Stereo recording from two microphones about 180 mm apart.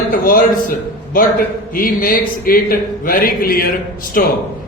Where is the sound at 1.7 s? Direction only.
50° left (ahead or behind).